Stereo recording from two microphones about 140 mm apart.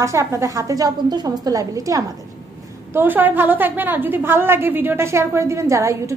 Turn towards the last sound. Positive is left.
turn(degrees=-20)  # may be behind; listen again after turning